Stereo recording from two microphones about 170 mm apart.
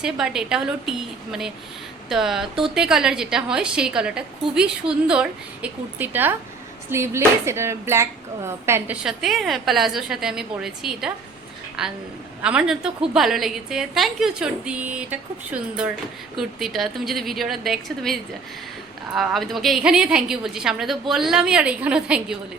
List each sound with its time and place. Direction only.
0.0 s a woman's voice: 5° right (ahead or behind)
6.9 s a sound: 15° right (ahead or behind)
9.0 s a woman's voice: centre (ahead or behind)